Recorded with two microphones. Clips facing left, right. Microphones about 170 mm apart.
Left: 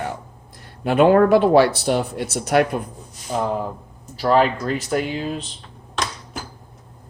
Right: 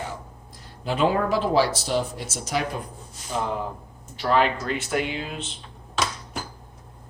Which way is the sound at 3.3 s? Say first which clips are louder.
Left 5 dB; 40° left (ahead or behind).